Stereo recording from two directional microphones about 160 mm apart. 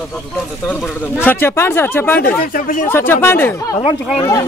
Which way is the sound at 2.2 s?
60° left (ahead or behind).